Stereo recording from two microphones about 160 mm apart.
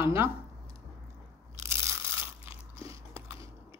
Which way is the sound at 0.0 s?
15° right (ahead or behind).